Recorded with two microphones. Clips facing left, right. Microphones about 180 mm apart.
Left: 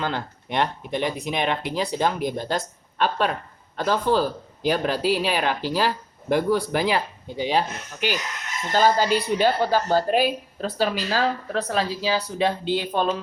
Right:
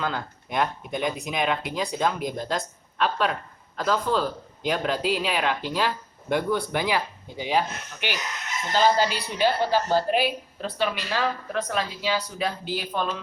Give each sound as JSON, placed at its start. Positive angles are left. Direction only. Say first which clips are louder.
{"t": 0.0, "sound": "a man's voice", "louder": "left 2 dB", "side_deg": 30}
{"t": 8.7, "sound": "speech", "louder": "left 2 dB", "side_deg": 45}